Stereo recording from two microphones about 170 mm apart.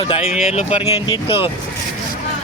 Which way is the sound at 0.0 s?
35° left (ahead or behind).